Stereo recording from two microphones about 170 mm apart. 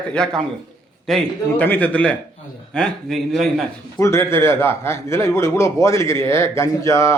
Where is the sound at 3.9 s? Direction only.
15° left (ahead or behind).